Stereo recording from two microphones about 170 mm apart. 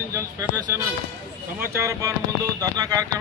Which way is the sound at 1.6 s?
15° right (ahead or behind).